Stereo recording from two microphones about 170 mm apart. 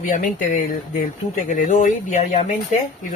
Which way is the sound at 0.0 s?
50° left (ahead or behind).